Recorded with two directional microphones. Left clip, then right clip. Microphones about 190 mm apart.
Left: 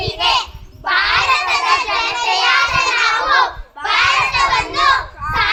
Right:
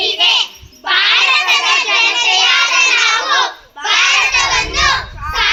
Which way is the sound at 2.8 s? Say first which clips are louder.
Right 4 dB; 40° right (ahead or behind).